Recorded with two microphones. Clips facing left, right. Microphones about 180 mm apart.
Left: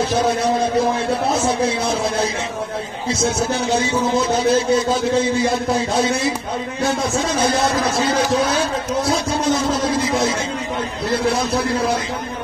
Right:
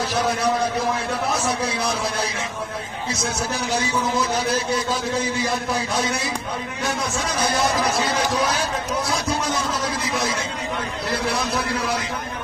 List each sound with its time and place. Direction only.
1.4 s speech: 25° left (ahead or behind)
3.3 s speech: 25° left (ahead or behind)
10.0 s a sound: 25° left (ahead or behind)
11.1 s speech: 25° left (ahead or behind)